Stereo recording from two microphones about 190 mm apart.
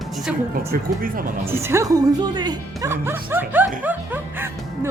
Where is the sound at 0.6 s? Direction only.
50° right (ahead or behind).